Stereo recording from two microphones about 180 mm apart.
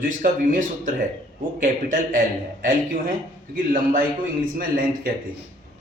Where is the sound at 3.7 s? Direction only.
50° right (ahead or behind).